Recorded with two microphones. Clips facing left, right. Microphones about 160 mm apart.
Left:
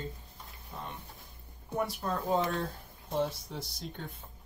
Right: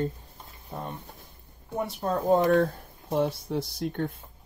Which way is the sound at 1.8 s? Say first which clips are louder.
Right 2 dB; 25° right (ahead or behind).